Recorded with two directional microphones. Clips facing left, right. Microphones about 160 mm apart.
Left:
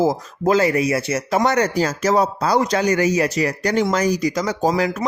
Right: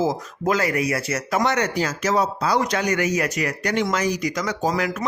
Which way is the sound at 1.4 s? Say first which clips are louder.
Left 4 dB; 40° left (ahead or behind).